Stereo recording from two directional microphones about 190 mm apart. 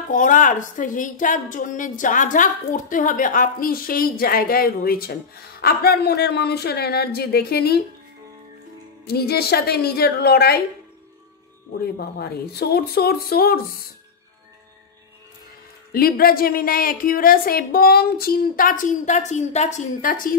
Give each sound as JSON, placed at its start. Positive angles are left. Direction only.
{"t": 0.1, "sound": "a woman's voice", "side_deg": 45}
{"t": 9.0, "sound": "speech", "side_deg": 55}
{"t": 11.8, "sound": "speech", "side_deg": 55}
{"t": 15.9, "sound": "a woman's voice", "side_deg": 50}